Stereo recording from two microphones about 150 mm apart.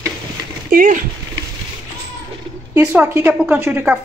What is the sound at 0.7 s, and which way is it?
Speech, 65° right (ahead or behind).